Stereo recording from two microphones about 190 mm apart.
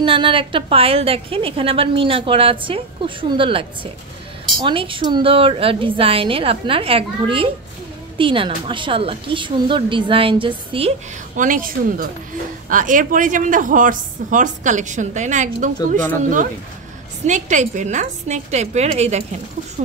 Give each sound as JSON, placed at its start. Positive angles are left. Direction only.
{"t": 0.0, "sound": "a woman's voice", "side_deg": -25}
{"t": 11.3, "sound": "a woman's voice", "side_deg": -45}
{"t": 17.3, "sound": "a woman's voice", "side_deg": -40}